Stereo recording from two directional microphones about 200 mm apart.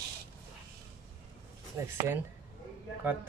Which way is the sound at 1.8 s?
15° right (ahead or behind).